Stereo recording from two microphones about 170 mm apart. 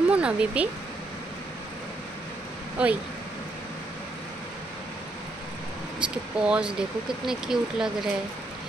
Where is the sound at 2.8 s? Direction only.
10° right (ahead or behind).